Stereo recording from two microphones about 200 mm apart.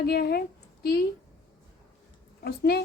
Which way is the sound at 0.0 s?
50° left (ahead or behind).